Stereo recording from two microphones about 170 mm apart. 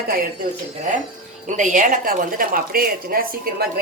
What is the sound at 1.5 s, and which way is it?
A woman's voice, 50° right (ahead or behind).